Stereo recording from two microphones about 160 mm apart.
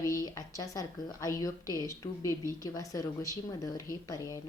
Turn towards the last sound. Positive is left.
turn(degrees=20)  # may be behind; listen again after turning